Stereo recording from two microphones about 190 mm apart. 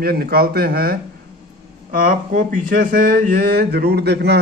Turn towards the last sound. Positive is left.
turn(degrees=-60)  # may be behind; listen again after turning